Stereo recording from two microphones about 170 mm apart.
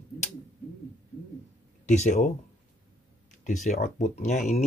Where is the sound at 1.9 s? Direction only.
45° left (ahead or behind).